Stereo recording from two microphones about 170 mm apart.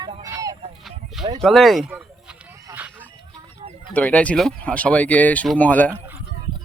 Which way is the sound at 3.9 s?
10° left (ahead or behind).